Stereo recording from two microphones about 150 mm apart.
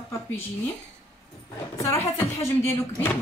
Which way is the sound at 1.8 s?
20° left (ahead or behind).